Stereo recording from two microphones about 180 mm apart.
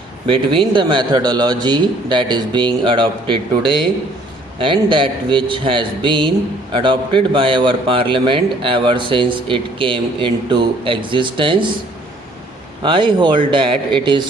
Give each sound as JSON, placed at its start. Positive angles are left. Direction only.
{"t": 0.3, "sound": "speech", "side_deg": -25}
{"t": 4.5, "sound": "speech", "side_deg": -30}
{"t": 12.8, "sound": "speech", "side_deg": -25}